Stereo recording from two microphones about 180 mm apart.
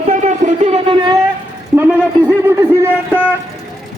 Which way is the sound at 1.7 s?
10° right (ahead or behind).